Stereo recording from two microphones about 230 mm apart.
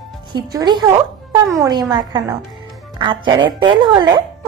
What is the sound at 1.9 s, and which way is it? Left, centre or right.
Speech, centre.